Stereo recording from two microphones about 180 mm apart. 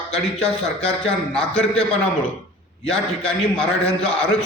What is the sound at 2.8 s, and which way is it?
Speech, 5° left (ahead or behind).